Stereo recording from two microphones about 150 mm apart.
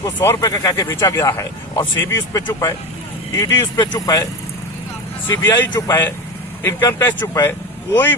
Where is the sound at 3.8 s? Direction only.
25° left (ahead or behind).